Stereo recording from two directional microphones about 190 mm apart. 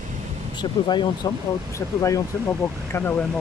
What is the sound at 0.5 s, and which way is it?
Speech, 25° left (ahead or behind).